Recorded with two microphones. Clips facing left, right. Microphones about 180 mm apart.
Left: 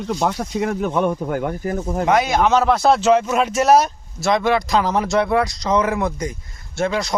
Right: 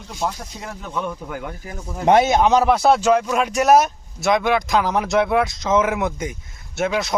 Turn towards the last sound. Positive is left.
turn(degrees=-5)  # may be behind; listen again after turning